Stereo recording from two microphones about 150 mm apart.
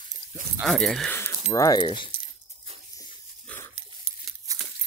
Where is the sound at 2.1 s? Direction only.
40° right (ahead or behind).